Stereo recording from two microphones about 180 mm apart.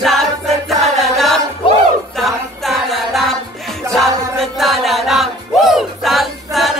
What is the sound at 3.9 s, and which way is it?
Music, centre (ahead or behind).